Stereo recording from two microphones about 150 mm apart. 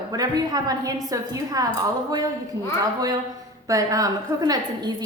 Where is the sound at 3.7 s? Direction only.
25° right (ahead or behind).